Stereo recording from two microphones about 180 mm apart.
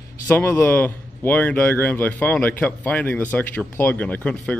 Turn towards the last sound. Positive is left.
turn(degrees=5)  # may be behind; listen again after turning